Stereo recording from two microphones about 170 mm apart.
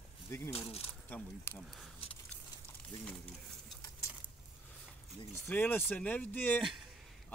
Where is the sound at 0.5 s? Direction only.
35° left (ahead or behind).